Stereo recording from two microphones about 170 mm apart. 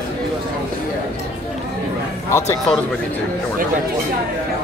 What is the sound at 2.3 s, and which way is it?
Speech, 15° left (ahead or behind).